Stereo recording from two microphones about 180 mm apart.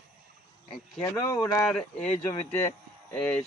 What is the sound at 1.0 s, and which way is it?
Speech, 15° left (ahead or behind).